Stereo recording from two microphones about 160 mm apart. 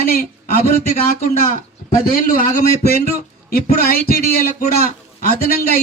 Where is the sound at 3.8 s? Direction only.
65° left (ahead or behind).